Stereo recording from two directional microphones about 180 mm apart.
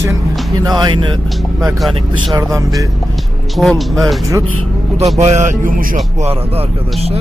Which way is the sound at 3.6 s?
Centre (ahead or behind).